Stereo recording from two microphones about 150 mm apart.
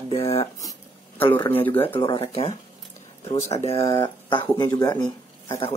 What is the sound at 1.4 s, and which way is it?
Speech, 40° left (ahead or behind).